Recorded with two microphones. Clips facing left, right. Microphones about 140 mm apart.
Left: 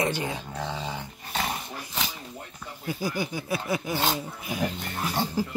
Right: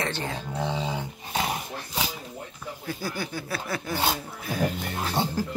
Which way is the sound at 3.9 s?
10° right (ahead or behind).